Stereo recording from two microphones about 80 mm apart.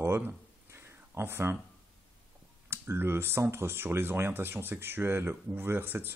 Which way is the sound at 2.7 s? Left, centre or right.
Right.